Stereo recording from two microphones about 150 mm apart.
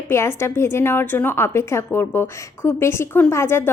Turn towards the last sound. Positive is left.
turn(degrees=15)  # may be behind; listen again after turning